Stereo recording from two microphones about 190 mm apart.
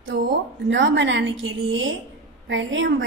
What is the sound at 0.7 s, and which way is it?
A woman's voice, 75° right (ahead or behind).